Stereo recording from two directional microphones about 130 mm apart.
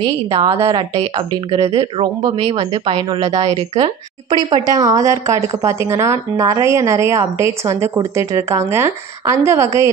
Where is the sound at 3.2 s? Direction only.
55° right (ahead or behind).